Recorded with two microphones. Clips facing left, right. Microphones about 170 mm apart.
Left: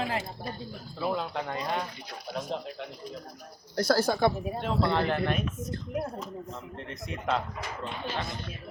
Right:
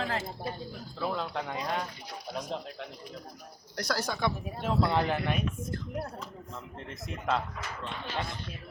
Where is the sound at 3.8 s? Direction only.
30° left (ahead or behind).